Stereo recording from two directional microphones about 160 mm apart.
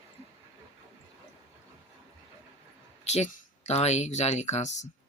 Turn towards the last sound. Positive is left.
turn(degrees=45)  # may be behind; listen again after turning